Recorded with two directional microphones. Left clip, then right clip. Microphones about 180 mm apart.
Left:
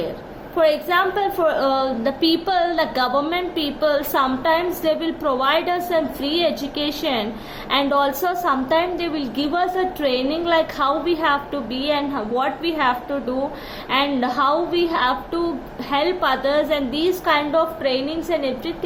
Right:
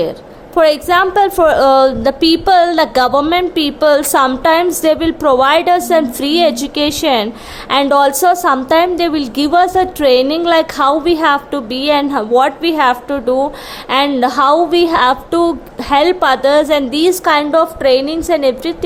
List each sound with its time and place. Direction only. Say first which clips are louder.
0.5 s a woman's voice: right 7 dB; 50° right (ahead or behind)